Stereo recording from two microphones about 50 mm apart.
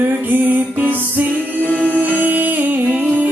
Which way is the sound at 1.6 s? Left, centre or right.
Left.